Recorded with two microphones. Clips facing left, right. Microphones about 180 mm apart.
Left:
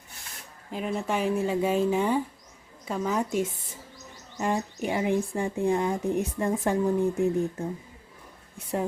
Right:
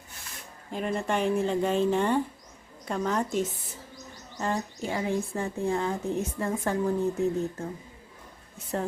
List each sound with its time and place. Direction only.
0.7 s speech: 5° left (ahead or behind)